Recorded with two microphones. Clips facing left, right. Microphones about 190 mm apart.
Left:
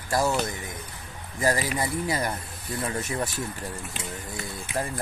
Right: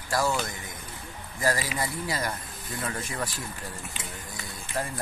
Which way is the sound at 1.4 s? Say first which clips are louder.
Left 3 dB; 20° left (ahead or behind).